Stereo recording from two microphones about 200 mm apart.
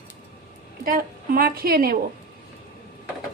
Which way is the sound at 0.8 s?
45° right (ahead or behind).